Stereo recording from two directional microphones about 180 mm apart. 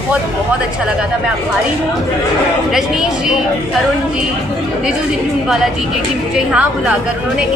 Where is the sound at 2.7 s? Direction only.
5° right (ahead or behind).